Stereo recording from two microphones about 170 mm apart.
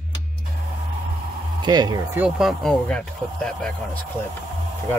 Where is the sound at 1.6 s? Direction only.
25° right (ahead or behind).